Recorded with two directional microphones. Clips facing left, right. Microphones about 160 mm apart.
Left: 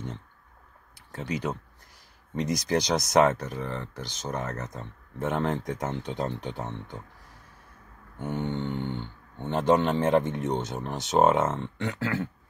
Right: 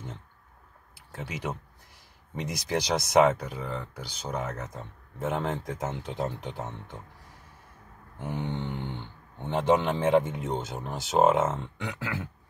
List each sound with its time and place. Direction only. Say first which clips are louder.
0.9 s speech: left 6 dB; 5° right (ahead or behind)
8.2 s speech: left 3 dB; 10° right (ahead or behind)